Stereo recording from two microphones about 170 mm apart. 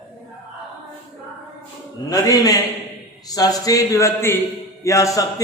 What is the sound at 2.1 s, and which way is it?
A man's voice, 20° left (ahead or behind).